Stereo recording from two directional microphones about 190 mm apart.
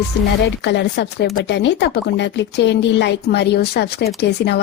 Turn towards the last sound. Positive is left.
turn(degrees=60)  # may be behind; listen again after turning